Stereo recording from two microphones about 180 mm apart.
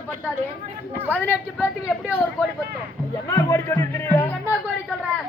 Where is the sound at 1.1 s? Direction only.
10° left (ahead or behind).